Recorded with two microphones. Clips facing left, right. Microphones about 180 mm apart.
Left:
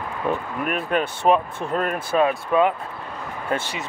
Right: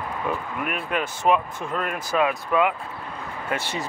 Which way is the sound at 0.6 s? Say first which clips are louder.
Left 5 dB; 40° left (ahead or behind).